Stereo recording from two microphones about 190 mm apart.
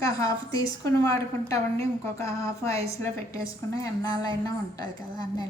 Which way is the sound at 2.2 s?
15° left (ahead or behind).